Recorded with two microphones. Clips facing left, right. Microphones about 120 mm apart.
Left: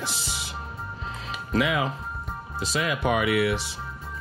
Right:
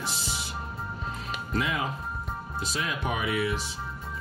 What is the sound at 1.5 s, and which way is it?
Speech, 85° left.